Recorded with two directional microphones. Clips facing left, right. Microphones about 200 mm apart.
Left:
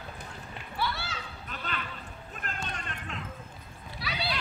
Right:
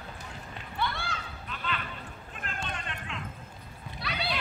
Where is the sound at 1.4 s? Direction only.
45° left (ahead or behind).